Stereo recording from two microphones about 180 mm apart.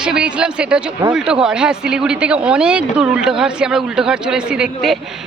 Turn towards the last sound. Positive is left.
turn(degrees=0)  # may be behind; listen again after turning